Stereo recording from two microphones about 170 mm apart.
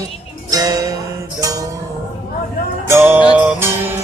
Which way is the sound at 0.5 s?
20° right (ahead or behind).